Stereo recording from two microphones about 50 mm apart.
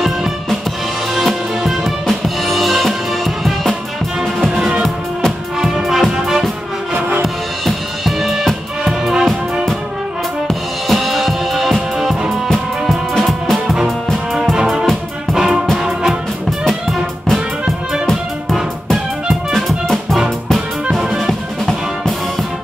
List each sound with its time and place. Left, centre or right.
0.0 s music: centre
4.5 s music: centre
5.8 s music: centre
7.6 s music: centre
10.9 s music: centre
14.5 s music: centre
16.4 s music: centre
20.9 s music: centre
21.3 s music: centre